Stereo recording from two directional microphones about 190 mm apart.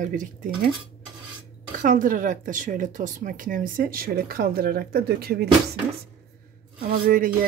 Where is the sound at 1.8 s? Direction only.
45° right (ahead or behind).